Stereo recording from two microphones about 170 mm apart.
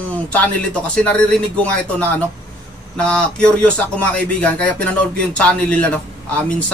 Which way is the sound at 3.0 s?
5° left (ahead or behind).